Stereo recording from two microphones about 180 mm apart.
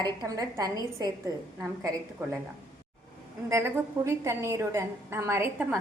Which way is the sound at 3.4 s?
15° right (ahead or behind).